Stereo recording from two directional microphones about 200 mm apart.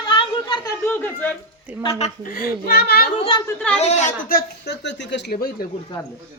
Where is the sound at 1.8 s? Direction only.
30° left (ahead or behind).